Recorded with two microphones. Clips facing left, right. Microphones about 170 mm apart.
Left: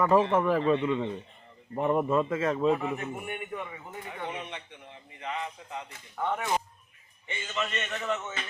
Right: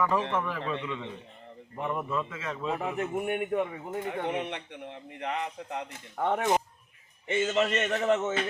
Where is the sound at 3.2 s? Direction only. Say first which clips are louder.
Right 7 dB; 55° right (ahead or behind).